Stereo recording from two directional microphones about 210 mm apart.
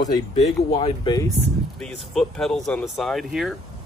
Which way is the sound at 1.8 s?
5° left (ahead or behind).